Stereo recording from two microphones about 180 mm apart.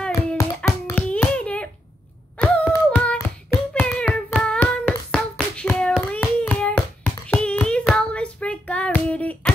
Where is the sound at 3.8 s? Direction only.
Centre (ahead or behind).